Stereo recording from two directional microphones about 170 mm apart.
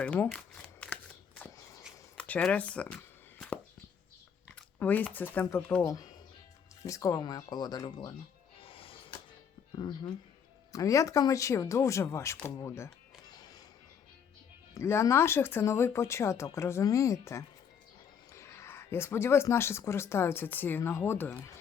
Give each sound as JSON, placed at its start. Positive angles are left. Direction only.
{"t": 0.0, "sound": "a sound", "side_deg": 10}
{"t": 4.4, "sound": "chewing", "side_deg": 10}
{"t": 5.1, "sound": "speech", "side_deg": 10}
{"t": 8.5, "sound": "music", "side_deg": 30}
{"t": 9.7, "sound": "speech", "side_deg": 25}
{"t": 14.8, "sound": "speech", "side_deg": 15}